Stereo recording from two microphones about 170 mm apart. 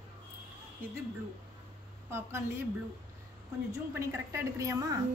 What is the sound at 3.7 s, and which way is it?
A woman's voice, 15° right (ahead or behind).